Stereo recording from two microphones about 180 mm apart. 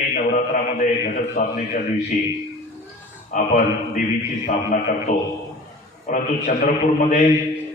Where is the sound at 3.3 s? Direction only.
50° left (ahead or behind).